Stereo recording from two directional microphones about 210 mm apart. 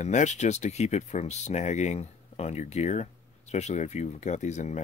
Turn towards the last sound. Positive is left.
turn(degrees=35)  # may be behind; listen again after turning